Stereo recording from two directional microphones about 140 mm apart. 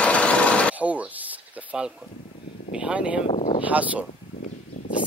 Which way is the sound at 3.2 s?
45° left (ahead or behind).